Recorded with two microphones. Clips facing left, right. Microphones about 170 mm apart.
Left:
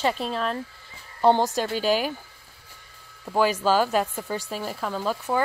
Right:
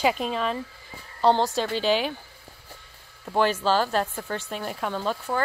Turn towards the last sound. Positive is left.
turn(degrees=5)  # may be behind; listen again after turning